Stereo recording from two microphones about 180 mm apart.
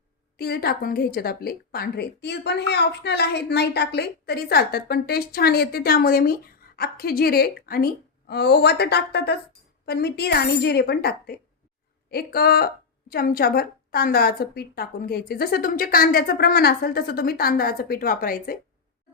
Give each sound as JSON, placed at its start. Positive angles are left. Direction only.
{"t": 0.3, "sound": "a woman's voice", "side_deg": 60}